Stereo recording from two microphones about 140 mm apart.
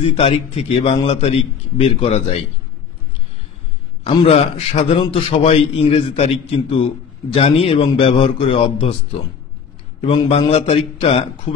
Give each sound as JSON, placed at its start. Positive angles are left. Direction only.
{"t": 0.0, "sound": "a man's voice", "side_deg": 45}
{"t": 4.0, "sound": "a man's voice", "side_deg": 45}
{"t": 10.3, "sound": "a man's voice", "side_deg": 45}